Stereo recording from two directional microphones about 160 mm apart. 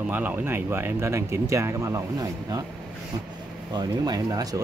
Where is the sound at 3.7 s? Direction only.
25° right (ahead or behind).